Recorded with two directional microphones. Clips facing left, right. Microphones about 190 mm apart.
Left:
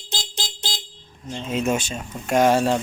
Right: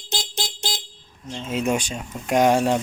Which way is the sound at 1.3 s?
10° right (ahead or behind).